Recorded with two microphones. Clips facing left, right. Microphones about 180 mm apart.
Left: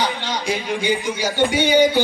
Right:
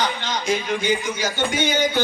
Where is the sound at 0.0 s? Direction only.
15° left (ahead or behind).